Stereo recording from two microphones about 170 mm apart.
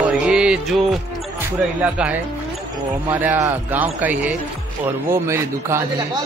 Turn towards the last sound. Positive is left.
turn(degrees=-15)  # may be behind; listen again after turning